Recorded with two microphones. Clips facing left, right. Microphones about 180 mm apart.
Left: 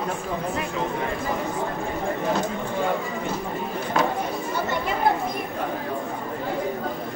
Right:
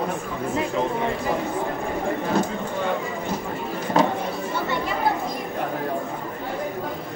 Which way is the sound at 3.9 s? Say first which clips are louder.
Right 3 dB; 30° right (ahead or behind).